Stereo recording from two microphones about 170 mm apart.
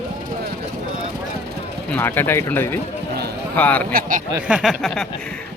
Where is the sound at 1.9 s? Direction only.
10° left (ahead or behind).